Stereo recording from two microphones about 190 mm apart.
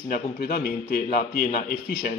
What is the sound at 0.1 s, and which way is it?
A man's voice, 45° left (ahead or behind).